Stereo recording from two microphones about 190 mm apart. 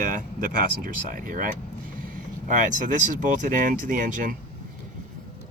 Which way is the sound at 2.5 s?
45° right (ahead or behind).